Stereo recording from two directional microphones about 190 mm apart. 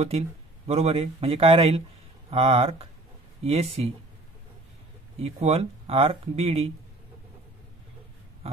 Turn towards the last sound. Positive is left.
turn(degrees=-30)  # may be behind; listen again after turning